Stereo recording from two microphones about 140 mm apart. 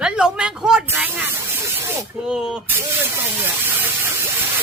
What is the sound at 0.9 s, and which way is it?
Snake, 15° right (ahead or behind).